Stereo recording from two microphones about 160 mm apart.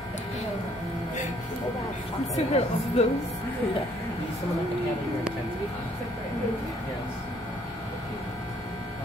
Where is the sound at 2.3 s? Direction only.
40° left (ahead or behind).